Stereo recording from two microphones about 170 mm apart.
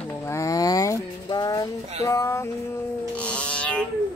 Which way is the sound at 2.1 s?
15° left (ahead or behind).